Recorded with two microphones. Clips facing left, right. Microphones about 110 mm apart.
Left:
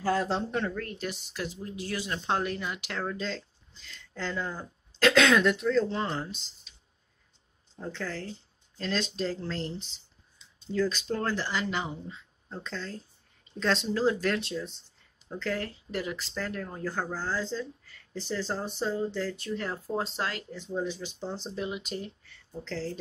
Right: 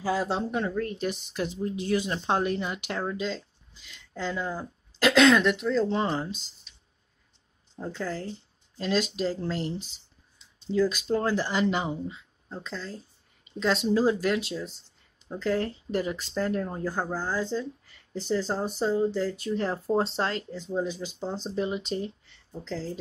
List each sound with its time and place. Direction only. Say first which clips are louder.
0.0 s speech: even; 5° right (ahead or behind)
5.9 s speech: right 4 dB; 15° right (ahead or behind)
7.7 s speech: right 3 dB; 15° right (ahead or behind)
12.1 s speech: right 2 dB; 5° right (ahead or behind)
13.9 s speech: right 3 dB; 15° right (ahead or behind)
16.8 s speech: right 3 dB; 15° right (ahead or behind)
19.5 s speech: right 7 dB; 25° right (ahead or behind)
20.7 s speech: right 3 dB; 15° right (ahead or behind)
21.5 s speech: right 7 dB; 30° right (ahead or behind); by 22.9 s 15° right (ahead or behind)